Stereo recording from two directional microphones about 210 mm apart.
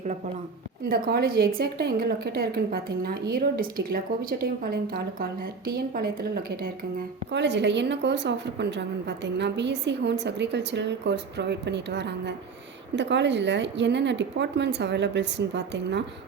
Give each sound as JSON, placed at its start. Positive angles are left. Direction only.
{"t": 0.9, "sound": "a woman's voice", "side_deg": -45}